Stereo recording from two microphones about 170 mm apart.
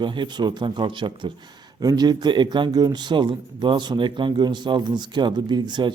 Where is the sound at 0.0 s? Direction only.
30° right (ahead or behind).